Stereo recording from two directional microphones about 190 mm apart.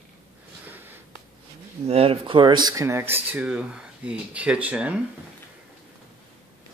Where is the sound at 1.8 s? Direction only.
30° right (ahead or behind); by 5.0 s 5° right (ahead or behind).